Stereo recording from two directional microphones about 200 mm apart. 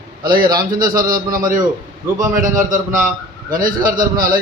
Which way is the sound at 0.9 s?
45° right (ahead or behind).